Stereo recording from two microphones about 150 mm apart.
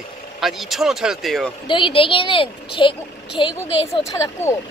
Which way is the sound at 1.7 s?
35° left (ahead or behind).